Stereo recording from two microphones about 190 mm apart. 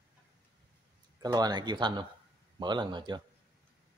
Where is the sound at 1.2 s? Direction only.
20° right (ahead or behind).